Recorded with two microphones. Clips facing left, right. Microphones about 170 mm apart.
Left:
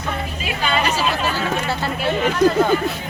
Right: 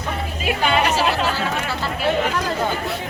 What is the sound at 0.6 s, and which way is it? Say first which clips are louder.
Music: right 2 dB; 65° right (ahead or behind).